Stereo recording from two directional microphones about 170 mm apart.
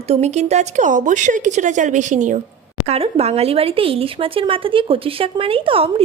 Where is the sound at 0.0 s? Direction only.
40° right (ahead or behind).